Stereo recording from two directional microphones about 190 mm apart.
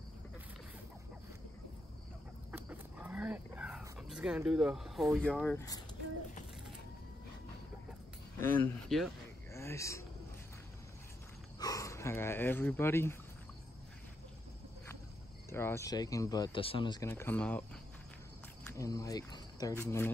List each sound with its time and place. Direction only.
2.5 s roaring cats: 10° right (ahead or behind)
8.5 s speech: 5° left (ahead or behind)
9.5 s a sound: 15° left (ahead or behind)
11.6 s speech: 15° left (ahead or behind)
15.5 s speech: 15° left (ahead or behind)
17.1 s speech: 10° left (ahead or behind)